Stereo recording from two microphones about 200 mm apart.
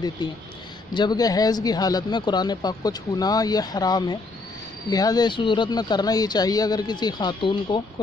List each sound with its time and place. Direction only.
0.2 s speech: 20° left (ahead or behind)